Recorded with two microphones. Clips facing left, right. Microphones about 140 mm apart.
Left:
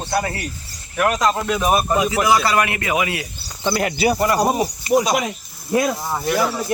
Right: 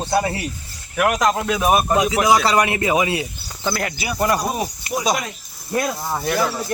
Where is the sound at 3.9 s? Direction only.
35° left (ahead or behind).